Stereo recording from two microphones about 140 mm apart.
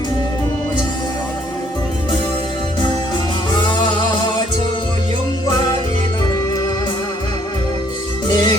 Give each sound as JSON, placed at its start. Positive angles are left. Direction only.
{"t": 3.5, "sound": "music", "side_deg": 30}
{"t": 8.3, "sound": "music", "side_deg": 30}